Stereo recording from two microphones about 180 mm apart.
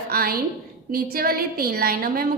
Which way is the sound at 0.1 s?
55° right (ahead or behind).